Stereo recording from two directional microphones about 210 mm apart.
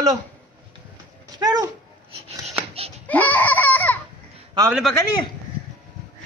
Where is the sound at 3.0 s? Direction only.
10° left (ahead or behind).